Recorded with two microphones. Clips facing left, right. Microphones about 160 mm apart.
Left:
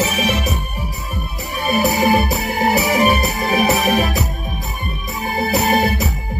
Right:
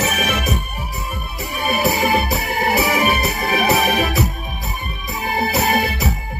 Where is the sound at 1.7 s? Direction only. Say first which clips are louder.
Left 3 dB; 40° left (ahead or behind).